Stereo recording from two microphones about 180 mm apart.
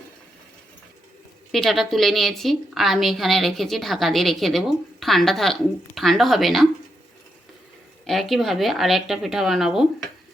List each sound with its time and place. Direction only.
1.5 s a woman's voice: centre (ahead or behind)
8.0 s a woman's voice: centre (ahead or behind)